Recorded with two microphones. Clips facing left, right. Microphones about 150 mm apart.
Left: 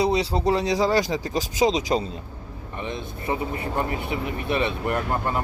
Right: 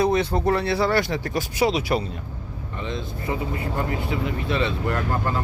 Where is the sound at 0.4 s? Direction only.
15° left (ahead or behind).